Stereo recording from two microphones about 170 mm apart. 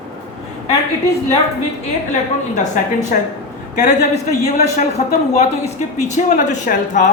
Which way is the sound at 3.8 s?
45° left (ahead or behind).